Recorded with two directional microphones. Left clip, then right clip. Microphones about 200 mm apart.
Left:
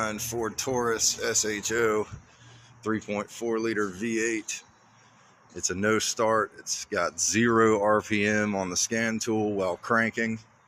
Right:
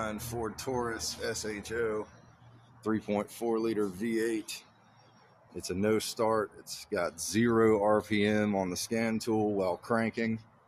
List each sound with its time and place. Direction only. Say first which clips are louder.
0.0 s speech: left 6 dB; 10° left (ahead or behind)
2.8 s speech: left 2 dB; 10° right (ahead or behind)